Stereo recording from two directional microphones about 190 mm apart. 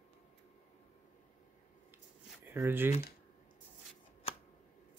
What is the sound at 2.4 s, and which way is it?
Speech, 10° right (ahead or behind).